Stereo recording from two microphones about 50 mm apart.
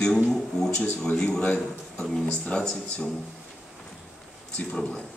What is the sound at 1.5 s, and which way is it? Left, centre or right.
A man's voice, centre.